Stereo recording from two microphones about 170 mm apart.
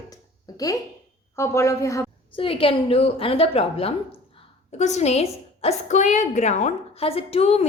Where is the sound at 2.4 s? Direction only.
30° left (ahead or behind).